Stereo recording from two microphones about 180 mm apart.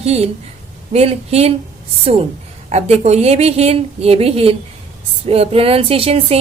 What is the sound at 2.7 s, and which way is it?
Speech, 35° right (ahead or behind).